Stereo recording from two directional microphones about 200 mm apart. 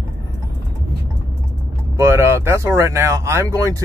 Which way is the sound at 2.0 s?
15° right (ahead or behind).